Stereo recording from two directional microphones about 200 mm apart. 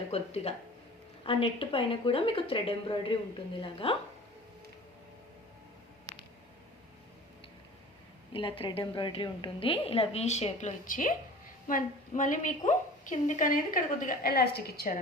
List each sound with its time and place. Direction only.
0.1 s a woman's voice: 30° left (ahead or behind)
8.3 s a woman's voice: 25° left (ahead or behind); by 15.0 s 45° left (ahead or behind)